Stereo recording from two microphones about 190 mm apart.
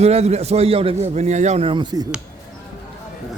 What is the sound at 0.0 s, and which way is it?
A man's voice, 35° right (ahead or behind).